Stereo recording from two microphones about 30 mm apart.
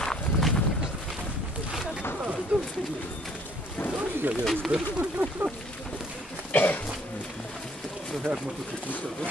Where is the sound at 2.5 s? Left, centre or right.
Right.